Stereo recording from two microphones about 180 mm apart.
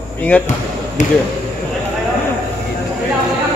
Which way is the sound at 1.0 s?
40° left (ahead or behind).